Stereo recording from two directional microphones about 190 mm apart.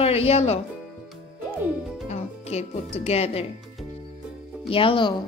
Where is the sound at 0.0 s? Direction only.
30° left (ahead or behind).